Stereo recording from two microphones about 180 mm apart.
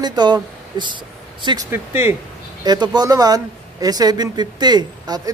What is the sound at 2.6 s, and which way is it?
A man's voice, 25° right (ahead or behind).